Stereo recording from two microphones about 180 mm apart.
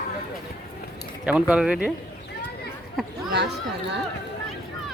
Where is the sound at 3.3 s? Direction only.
70° right (ahead or behind).